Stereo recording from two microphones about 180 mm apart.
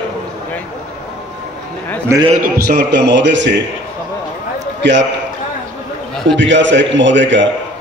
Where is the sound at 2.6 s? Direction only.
65° right (ahead or behind); by 3.6 s 80° right.